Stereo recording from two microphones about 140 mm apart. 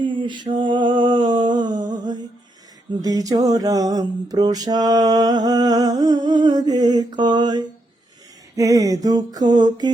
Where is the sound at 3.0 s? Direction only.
25° right (ahead or behind).